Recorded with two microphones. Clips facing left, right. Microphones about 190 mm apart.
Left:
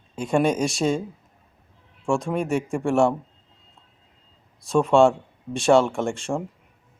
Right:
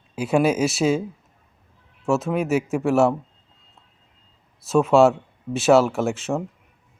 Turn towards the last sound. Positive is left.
turn(degrees=-5)  # may be behind; listen again after turning